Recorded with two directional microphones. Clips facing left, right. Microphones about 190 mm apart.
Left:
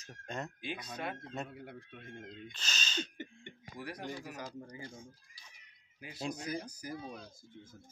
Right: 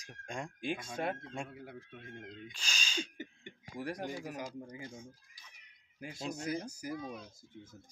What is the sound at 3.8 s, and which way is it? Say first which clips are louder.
Speech: right 4 dB; 45° right (ahead or behind).